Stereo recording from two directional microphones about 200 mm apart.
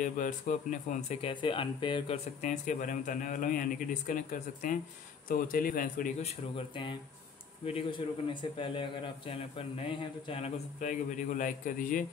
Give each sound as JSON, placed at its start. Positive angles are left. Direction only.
{"t": 0.0, "sound": "speech", "side_deg": 40}
{"t": 1.3, "sound": "speech", "side_deg": 25}
{"t": 6.2, "sound": "speech", "side_deg": 25}